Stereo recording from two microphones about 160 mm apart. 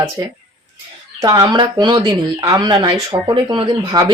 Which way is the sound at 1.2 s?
25° right (ahead or behind).